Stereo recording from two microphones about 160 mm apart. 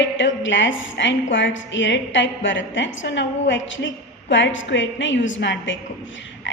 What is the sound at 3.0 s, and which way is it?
Speech, 90° left.